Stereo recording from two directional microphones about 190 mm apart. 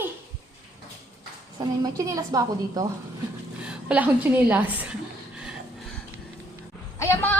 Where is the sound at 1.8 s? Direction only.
20° right (ahead or behind).